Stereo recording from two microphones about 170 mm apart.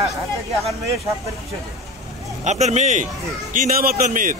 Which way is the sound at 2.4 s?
40° right (ahead or behind).